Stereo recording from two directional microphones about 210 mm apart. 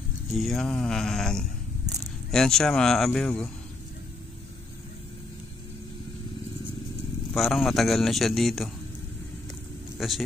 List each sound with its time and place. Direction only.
0.3 s a man's voice: centre (ahead or behind)
7.3 s a man's voice: centre (ahead or behind)
9.9 s speech: centre (ahead or behind)